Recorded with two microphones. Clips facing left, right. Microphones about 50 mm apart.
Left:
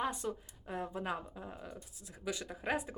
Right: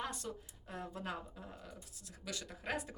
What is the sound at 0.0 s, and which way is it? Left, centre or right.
Speech, centre.